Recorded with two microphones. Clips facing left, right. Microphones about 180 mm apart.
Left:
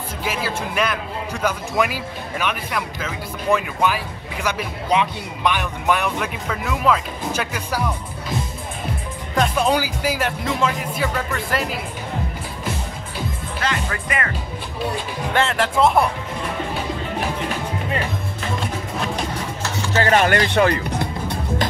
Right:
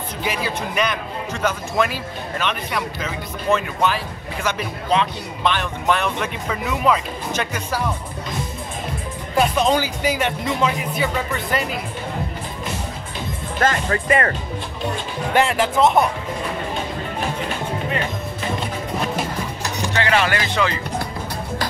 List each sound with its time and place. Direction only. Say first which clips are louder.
0.2 s speech: right 1 dB; centre (ahead or behind)
7.3 s speech: right 2 dB; 10° left (ahead or behind)
9.6 s speech: right 1 dB; 10° left (ahead or behind)
13.6 s speech: right 6 dB; 40° right (ahead or behind)
15.3 s speech: right 3 dB; 10° right (ahead or behind)
20.0 s speech: left 4 dB; 45° left (ahead or behind); by 20.8 s 60° left (ahead or behind)
21.0 s music: left 2 dB; 20° left (ahead or behind)